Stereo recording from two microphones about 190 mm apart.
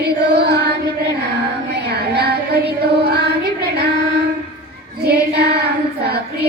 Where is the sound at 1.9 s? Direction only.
60° right (ahead or behind).